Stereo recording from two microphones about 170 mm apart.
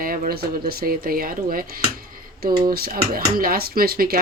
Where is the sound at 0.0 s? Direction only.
55° right (ahead or behind).